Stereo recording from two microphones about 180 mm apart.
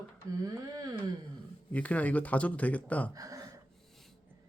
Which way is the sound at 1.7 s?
10° left (ahead or behind).